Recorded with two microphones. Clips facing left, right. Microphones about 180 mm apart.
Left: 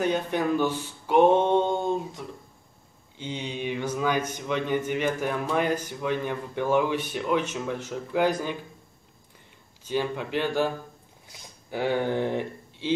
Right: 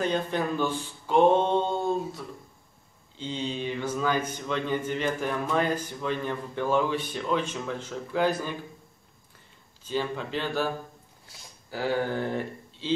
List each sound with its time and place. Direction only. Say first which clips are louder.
0.0 s speech: left 2 dB; 10° left (ahead or behind)
9.8 s speech: left 2 dB; 15° left (ahead or behind)